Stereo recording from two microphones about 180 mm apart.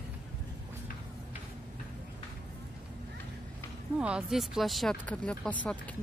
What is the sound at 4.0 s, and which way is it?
Speech, 5° right (ahead or behind).